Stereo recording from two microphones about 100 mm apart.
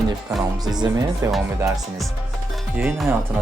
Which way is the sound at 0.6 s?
40° right (ahead or behind).